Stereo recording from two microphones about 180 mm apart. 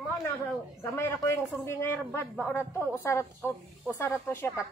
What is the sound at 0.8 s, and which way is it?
A woman's voice, 15° left (ahead or behind).